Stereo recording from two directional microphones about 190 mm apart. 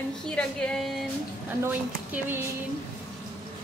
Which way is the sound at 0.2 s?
5° left (ahead or behind).